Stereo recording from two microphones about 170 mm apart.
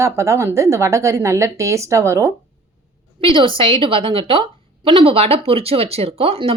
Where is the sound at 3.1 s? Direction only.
30° right (ahead or behind).